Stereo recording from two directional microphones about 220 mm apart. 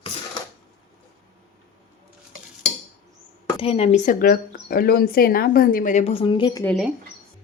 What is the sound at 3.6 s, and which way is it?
A woman's voice, 25° left (ahead or behind).